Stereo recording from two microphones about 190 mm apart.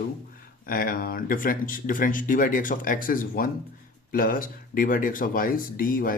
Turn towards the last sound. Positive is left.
turn(degrees=50)  # may be behind; listen again after turning